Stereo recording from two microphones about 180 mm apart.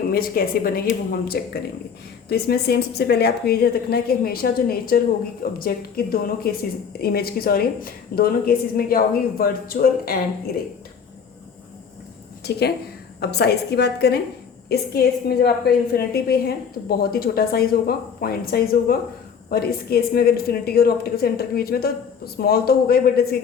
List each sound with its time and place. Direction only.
0.1 s a woman's voice: 55° left (ahead or behind)
12.4 s a woman's voice: 65° left (ahead or behind)